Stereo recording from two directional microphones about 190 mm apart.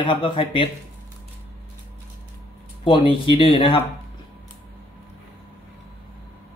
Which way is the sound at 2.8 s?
25° left (ahead or behind).